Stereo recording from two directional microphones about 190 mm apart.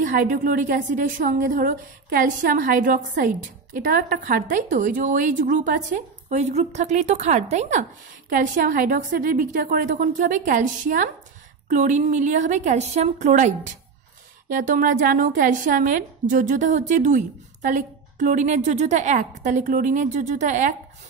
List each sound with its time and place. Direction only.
0.0 s a woman's voice: 45° right (ahead or behind)